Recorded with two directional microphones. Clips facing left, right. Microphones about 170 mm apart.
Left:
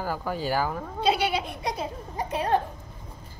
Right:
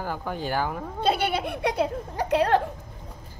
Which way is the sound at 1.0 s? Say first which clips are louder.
Even; 55° right (ahead or behind).